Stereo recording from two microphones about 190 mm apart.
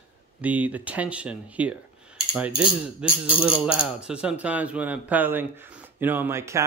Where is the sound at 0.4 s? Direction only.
10° right (ahead or behind).